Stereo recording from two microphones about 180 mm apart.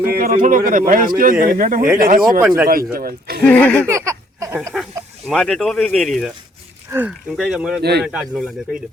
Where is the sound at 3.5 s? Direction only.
10° left (ahead or behind).